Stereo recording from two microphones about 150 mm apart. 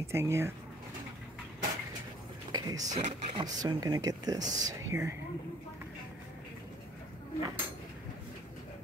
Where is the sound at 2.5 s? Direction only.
25° right (ahead or behind).